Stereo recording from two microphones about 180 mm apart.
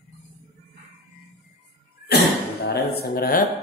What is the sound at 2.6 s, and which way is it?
Speech, 60° left (ahead or behind).